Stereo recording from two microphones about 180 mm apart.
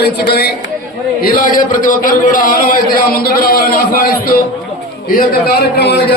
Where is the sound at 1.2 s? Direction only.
50° left (ahead or behind).